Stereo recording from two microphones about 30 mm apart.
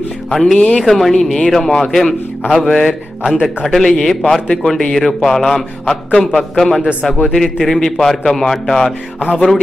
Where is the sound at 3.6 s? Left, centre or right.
Centre.